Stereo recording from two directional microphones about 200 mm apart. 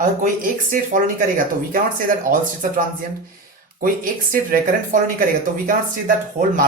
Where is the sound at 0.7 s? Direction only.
45° right (ahead or behind).